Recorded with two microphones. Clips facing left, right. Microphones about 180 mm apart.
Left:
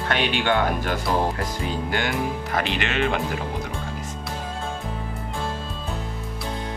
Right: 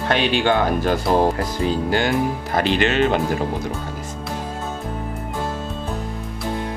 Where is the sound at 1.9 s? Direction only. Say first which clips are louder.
Right 5 dB; 35° right (ahead or behind).